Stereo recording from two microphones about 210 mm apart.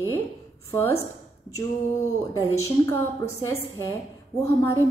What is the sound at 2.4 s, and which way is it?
A woman's voice, 15° left (ahead or behind).